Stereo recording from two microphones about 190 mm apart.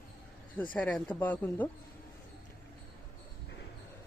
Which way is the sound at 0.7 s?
5° left (ahead or behind).